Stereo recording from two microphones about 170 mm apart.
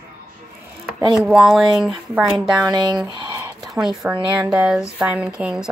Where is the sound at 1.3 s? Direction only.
Centre (ahead or behind).